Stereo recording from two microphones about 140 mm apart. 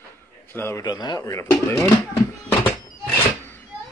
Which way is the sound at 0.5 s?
15° left (ahead or behind).